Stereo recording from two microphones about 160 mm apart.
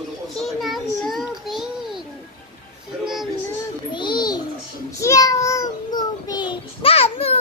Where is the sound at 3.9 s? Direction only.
30° left (ahead or behind).